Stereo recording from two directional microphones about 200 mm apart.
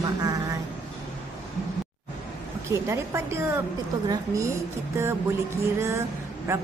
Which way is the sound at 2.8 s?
15° right (ahead or behind).